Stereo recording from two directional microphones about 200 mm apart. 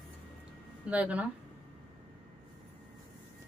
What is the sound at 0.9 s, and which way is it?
Speech, 5° right (ahead or behind).